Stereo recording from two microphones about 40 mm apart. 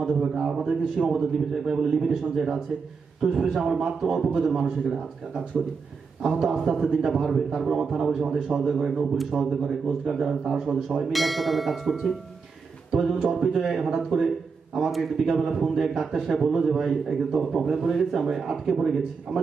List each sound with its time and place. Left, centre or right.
0.2 s a man's voice: centre
6.2 s a man's voice: centre
14.8 s a man's voice: centre